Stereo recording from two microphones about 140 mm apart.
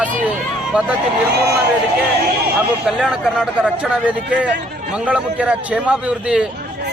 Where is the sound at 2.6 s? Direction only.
5° right (ahead or behind).